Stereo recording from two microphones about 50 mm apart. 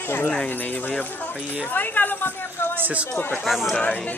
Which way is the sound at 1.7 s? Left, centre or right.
Left.